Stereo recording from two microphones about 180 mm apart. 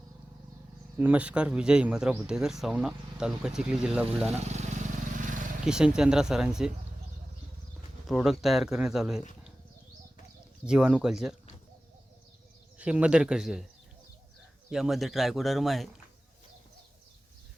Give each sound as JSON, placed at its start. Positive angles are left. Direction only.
{"t": 0.9, "sound": "speech", "side_deg": -10}
{"t": 5.1, "sound": "vehicle", "side_deg": -45}
{"t": 5.6, "sound": "speech", "side_deg": -5}
{"t": 8.0, "sound": "speech", "side_deg": 0}
{"t": 10.7, "sound": "speech", "side_deg": -5}
{"t": 12.8, "sound": "speech", "side_deg": -5}
{"t": 14.7, "sound": "speech", "side_deg": 0}